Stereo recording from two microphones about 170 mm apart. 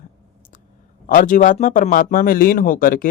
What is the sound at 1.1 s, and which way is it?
Speech, 50° left (ahead or behind).